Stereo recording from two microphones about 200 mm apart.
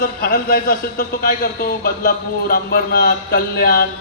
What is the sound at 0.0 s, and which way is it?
A man's voice, 45° left (ahead or behind).